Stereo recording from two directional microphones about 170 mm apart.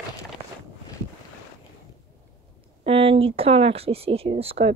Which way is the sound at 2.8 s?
35° right (ahead or behind).